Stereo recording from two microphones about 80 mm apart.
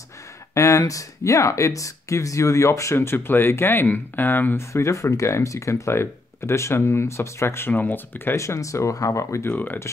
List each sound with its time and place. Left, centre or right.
0.6 s speech: left
9.5 s speech: left